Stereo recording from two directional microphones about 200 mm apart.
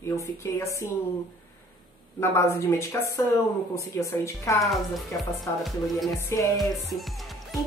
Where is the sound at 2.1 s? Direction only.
15° left (ahead or behind).